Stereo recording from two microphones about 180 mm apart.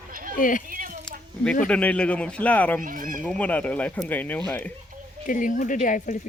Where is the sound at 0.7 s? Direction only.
50° right (ahead or behind).